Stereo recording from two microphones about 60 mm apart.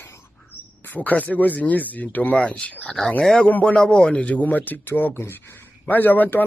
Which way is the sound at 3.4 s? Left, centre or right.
Left.